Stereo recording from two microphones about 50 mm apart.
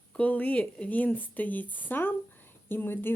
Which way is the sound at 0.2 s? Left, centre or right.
Left.